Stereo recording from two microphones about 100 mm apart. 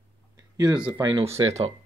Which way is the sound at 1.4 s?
90° right.